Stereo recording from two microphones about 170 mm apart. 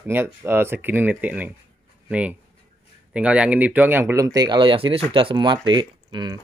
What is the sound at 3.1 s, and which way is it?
Speech, 5° right (ahead or behind).